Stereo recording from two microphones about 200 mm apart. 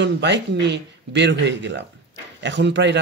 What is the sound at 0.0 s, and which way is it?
Speech, 60° right (ahead or behind).